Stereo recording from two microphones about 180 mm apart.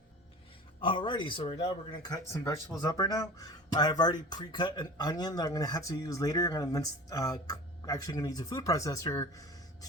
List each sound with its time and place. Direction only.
0.8 s speech: 25° left (ahead or behind)